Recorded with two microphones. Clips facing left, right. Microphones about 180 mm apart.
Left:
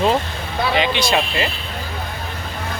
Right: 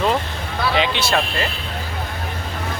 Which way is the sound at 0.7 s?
Centre (ahead or behind).